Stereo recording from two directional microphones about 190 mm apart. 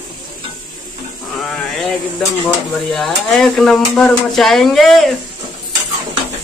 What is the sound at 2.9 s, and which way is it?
Speech, centre (ahead or behind).